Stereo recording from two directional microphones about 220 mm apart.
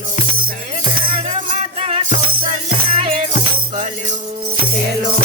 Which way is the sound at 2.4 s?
40° right (ahead or behind).